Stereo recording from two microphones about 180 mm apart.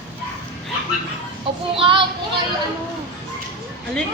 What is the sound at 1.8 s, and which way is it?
Child singing, 30° right (ahead or behind).